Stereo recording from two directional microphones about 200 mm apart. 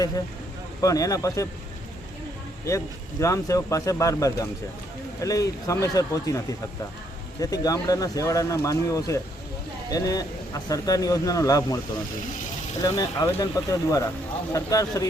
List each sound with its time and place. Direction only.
0.8 s speech: 15° left (ahead or behind)
2.6 s speech: 15° left (ahead or behind)
7.5 s speech: 20° left (ahead or behind)
12.8 s speech: 15° left (ahead or behind)